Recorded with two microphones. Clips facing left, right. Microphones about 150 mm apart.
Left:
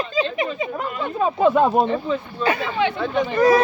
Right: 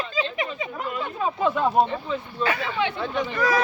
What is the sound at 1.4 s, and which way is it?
Speech, 75° left (ahead or behind).